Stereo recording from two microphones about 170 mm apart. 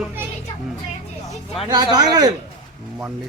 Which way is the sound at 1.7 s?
25° right (ahead or behind).